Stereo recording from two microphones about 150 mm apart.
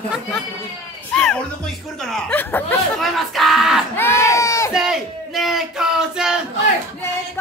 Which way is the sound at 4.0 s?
15° left (ahead or behind).